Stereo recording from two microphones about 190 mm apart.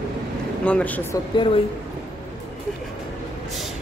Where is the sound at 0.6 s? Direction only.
5° left (ahead or behind).